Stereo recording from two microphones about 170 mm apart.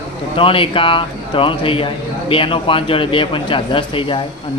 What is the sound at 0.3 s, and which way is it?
Speech, 30° left (ahead or behind).